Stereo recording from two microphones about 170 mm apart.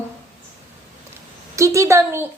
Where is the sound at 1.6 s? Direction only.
20° right (ahead or behind).